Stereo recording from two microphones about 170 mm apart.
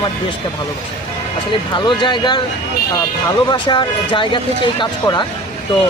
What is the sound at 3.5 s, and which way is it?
Speech, 30° left (ahead or behind).